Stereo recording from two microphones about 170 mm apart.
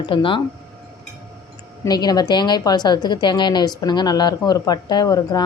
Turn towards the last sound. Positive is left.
turn(degrees=25)  # may be behind; listen again after turning